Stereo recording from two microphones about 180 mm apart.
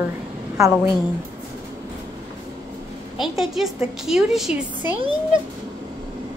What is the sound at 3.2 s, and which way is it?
A woman's voice, centre (ahead or behind).